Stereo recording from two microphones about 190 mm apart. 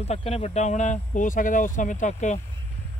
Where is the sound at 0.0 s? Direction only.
35° left (ahead or behind).